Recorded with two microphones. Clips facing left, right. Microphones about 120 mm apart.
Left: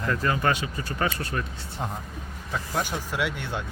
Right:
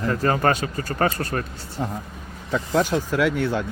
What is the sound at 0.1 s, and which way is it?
Speech, 40° right (ahead or behind).